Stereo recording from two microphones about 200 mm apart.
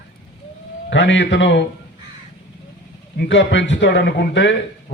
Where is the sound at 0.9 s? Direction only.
65° left (ahead or behind).